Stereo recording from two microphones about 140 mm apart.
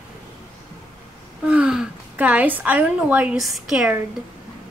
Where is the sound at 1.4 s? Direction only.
10° right (ahead or behind).